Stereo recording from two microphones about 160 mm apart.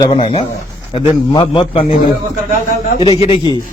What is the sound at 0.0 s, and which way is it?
A man's voice, 30° left (ahead or behind).